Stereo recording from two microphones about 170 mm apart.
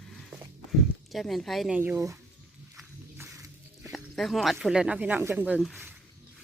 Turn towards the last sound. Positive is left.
turn(degrees=-5)  # may be behind; listen again after turning